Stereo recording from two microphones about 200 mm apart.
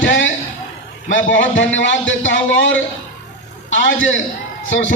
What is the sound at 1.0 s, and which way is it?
A man's voice, 70° left (ahead or behind).